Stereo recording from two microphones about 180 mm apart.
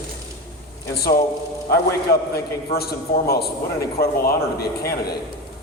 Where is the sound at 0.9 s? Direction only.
60° left (ahead or behind).